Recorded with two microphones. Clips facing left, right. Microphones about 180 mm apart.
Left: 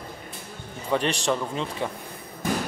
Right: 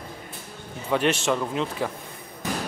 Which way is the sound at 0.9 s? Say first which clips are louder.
Right 2 dB; centre (ahead or behind).